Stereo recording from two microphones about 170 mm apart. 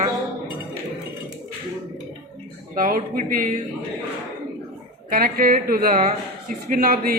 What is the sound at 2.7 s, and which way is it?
Speech, 55° right (ahead or behind).